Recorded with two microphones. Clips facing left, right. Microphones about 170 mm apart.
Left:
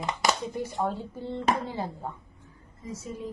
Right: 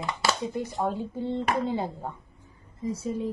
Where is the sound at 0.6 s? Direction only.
20° right (ahead or behind).